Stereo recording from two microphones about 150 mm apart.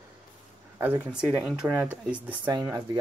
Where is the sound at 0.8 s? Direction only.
15° right (ahead or behind).